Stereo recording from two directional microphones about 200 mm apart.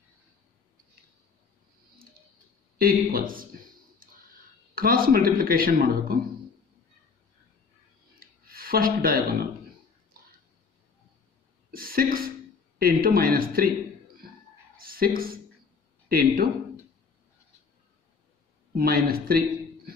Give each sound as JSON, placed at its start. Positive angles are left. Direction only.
{"t": 2.8, "sound": "speech", "side_deg": -50}
{"t": 4.7, "sound": "speech", "side_deg": -45}
{"t": 8.2, "sound": "a sound", "side_deg": -45}
{"t": 11.7, "sound": "speech", "side_deg": -45}
{"t": 14.8, "sound": "a sound", "side_deg": -45}
{"t": 16.1, "sound": "speech", "side_deg": -50}
{"t": 18.8, "sound": "speech", "side_deg": -50}